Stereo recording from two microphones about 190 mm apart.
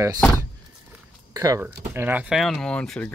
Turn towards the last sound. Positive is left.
turn(degrees=5)  # may be behind; listen again after turning